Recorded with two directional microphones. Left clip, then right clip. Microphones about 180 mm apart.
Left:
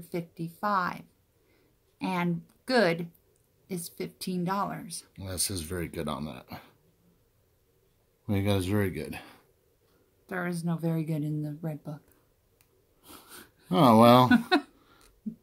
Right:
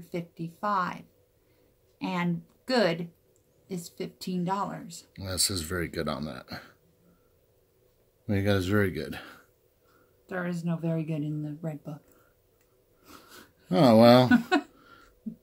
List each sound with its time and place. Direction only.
0.0 s speech: 35° left (ahead or behind)
5.1 s speech: 10° right (ahead or behind)
8.3 s speech: centre (ahead or behind)
10.2 s speech: 35° left (ahead or behind)
13.0 s wheeze: 35° left (ahead or behind)
13.7 s speech: 5° left (ahead or behind)